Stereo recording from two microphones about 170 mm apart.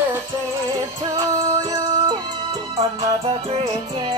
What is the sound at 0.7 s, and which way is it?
Music, 20° right (ahead or behind).